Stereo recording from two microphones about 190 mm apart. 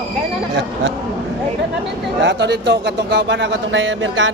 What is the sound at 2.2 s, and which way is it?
Speech, 65° right (ahead or behind).